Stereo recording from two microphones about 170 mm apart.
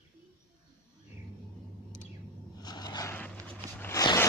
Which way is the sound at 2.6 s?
25° left (ahead or behind).